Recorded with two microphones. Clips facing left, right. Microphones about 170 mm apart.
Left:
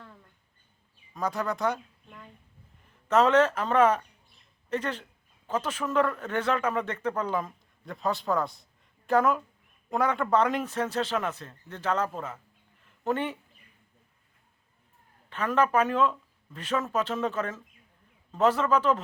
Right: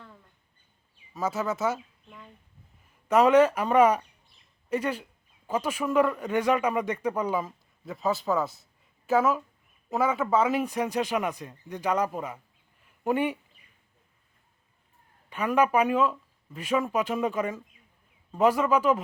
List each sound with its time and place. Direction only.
1.1 s speech: 5° right (ahead or behind)
3.1 s a man's voice: 10° right (ahead or behind)
15.3 s a man's voice: 10° right (ahead or behind)